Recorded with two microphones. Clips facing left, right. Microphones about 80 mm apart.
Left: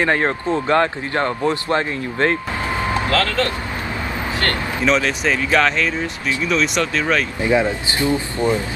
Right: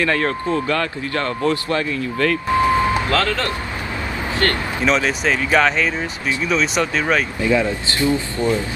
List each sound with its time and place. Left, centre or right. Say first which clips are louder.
0.0 s speech: left 1 dB; left
2.9 s speech: right 1 dB; right
4.8 s speech: even; centre
7.4 s speech: left 2 dB; left